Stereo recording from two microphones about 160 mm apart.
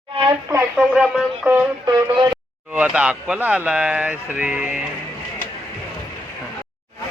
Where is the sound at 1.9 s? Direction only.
25° right (ahead or behind).